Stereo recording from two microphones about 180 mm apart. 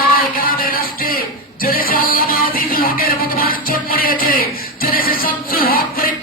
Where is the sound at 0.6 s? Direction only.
55° left (ahead or behind).